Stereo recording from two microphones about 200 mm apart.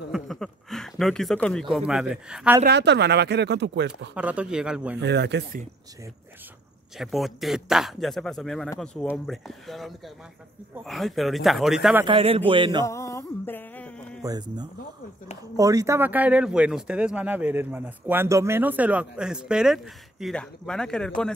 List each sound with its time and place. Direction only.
0.1 s speech: centre (ahead or behind)
2.6 s speech: 60° right (ahead or behind)
4.1 s speech: 5° right (ahead or behind)
5.0 s speech: 60° right (ahead or behind)
7.0 s speech: centre (ahead or behind)
12.1 s a man's voice: 30° right (ahead or behind)
12.8 s music: 15° left (ahead or behind)
14.2 s a man's voice: 20° right (ahead or behind); by 21.1 s 5° left (ahead or behind)